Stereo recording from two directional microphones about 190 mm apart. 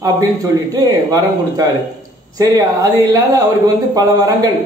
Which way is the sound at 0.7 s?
20° right (ahead or behind).